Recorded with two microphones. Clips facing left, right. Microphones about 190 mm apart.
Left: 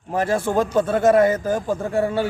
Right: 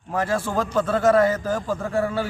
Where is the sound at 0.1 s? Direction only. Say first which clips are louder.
Left 3 dB; 25° left (ahead or behind).